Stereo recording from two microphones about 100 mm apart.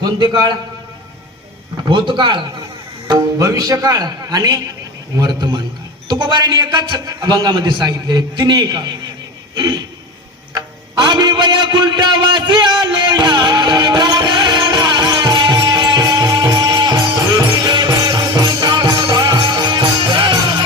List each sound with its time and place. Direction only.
0.0 s a man's voice: 50° right (ahead or behind)
1.9 s a man's voice: 55° right (ahead or behind)
3.1 s a man's voice: 35° right (ahead or behind)
11.0 s a sound: 45° right (ahead or behind)